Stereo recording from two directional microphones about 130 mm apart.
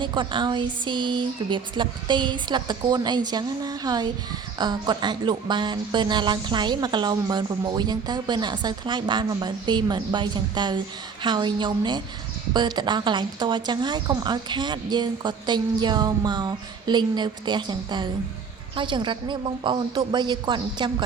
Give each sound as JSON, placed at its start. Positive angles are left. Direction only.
{"t": 0.0, "sound": "speech", "side_deg": -40}